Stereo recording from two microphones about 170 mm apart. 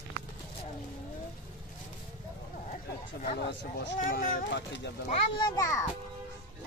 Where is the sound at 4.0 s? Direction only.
55° left (ahead or behind); by 4.9 s 90° left.